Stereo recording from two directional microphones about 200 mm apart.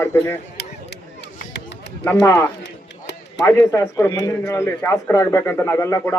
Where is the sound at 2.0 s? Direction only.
15° left (ahead or behind).